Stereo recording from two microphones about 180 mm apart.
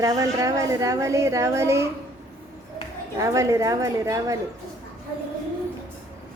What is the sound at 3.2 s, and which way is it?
A woman's voice, 15° right (ahead or behind).